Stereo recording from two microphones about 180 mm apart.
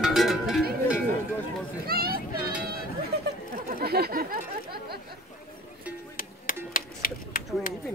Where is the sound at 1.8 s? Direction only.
55° right (ahead or behind).